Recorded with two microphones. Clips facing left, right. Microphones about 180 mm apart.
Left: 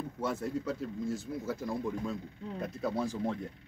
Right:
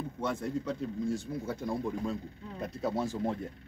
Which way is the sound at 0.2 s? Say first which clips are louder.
Even; 5° left (ahead or behind).